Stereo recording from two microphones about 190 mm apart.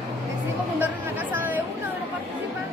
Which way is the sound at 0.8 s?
10° right (ahead or behind).